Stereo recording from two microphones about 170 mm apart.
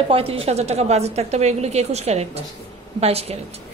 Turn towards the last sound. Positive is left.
turn(degrees=-35)  # may be behind; listen again after turning